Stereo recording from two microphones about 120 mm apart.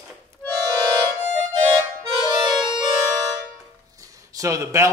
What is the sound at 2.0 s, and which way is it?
Music, 40° right (ahead or behind).